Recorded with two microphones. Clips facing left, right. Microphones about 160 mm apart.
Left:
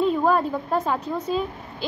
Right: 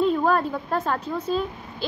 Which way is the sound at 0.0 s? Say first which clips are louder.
Left 1 dB; 5° left (ahead or behind).